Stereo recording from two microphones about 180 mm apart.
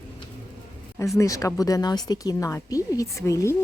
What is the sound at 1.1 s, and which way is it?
Speech, 20° left (ahead or behind).